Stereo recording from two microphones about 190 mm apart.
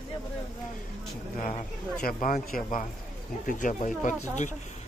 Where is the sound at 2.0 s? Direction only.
45° left (ahead or behind).